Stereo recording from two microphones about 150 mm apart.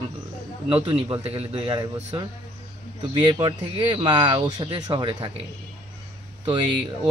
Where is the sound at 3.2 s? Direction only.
30° right (ahead or behind).